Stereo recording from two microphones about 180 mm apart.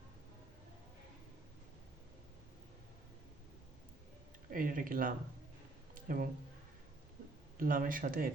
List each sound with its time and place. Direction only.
4.5 s speech: 50° right (ahead or behind)
5.9 s a sound: 50° right (ahead or behind)
7.6 s speech: 50° right (ahead or behind)